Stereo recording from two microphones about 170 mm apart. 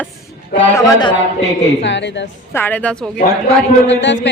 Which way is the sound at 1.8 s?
90° left.